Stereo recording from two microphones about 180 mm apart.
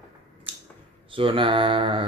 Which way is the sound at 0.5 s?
30° right (ahead or behind).